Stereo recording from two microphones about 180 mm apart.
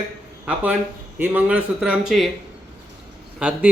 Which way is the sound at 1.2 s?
10° right (ahead or behind).